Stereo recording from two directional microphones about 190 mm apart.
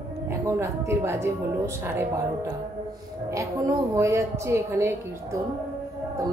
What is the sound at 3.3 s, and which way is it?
A woman's voice, 15° right (ahead or behind).